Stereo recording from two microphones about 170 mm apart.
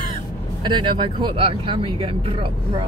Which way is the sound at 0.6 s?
30° right (ahead or behind).